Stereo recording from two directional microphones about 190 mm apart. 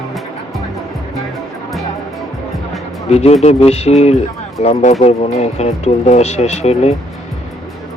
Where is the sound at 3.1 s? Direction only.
35° left (ahead or behind).